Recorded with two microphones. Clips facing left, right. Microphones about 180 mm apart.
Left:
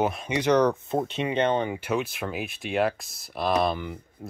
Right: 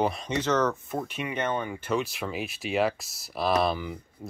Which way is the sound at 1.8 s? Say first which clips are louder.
Left 1 dB; 5° left (ahead or behind).